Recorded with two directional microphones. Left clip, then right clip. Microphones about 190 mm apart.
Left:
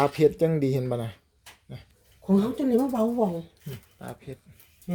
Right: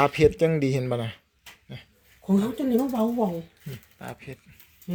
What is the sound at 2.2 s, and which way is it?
A man's voice, centre (ahead or behind).